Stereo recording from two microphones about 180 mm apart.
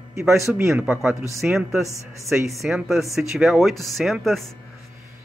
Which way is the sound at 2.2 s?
15° right (ahead or behind).